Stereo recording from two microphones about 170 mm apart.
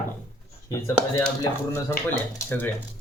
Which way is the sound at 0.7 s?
15° left (ahead or behind).